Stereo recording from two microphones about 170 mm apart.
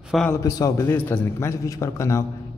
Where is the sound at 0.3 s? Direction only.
20° left (ahead or behind).